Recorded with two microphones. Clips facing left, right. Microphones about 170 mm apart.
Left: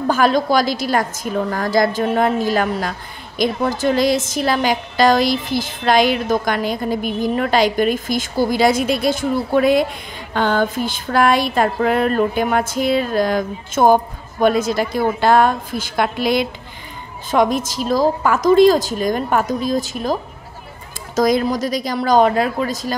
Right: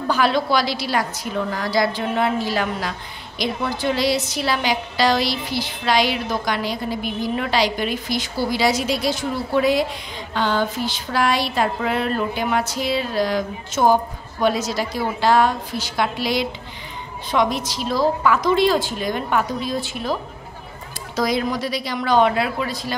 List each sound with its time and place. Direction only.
0.1 s a woman's voice: 45° left (ahead or behind)